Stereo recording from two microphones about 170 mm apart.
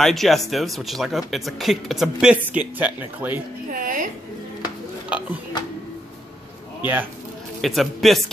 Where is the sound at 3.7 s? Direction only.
55° right (ahead or behind).